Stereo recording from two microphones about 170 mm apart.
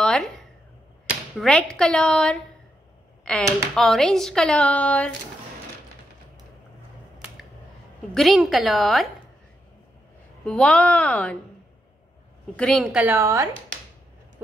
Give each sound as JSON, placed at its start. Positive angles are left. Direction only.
{"t": 0.0, "sound": "a sound", "side_deg": 5}
{"t": 1.4, "sound": "speech", "side_deg": 5}
{"t": 8.1, "sound": "speech", "side_deg": 0}
{"t": 10.4, "sound": "speech", "side_deg": 5}
{"t": 12.5, "sound": "speech", "side_deg": 5}
{"t": 12.9, "sound": "a woman's voice", "side_deg": -15}